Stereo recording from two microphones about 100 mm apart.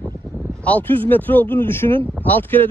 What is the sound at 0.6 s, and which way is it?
Speech, 15° left (ahead or behind).